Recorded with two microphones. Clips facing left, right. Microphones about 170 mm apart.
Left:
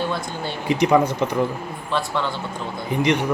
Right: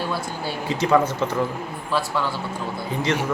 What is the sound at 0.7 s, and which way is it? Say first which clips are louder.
Speech: left 2 dB; 15° left (ahead or behind).